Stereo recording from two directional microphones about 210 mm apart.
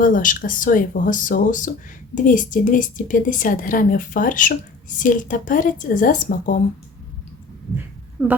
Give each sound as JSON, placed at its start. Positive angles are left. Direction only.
{"t": 0.0, "sound": "a woman's voice", "side_deg": 40}
{"t": 8.2, "sound": "speech", "side_deg": -10}